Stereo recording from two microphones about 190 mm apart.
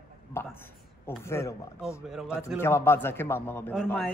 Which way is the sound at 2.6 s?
10° left (ahead or behind).